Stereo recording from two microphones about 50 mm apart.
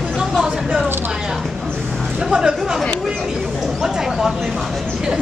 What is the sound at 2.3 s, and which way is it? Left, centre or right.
Speech, centre.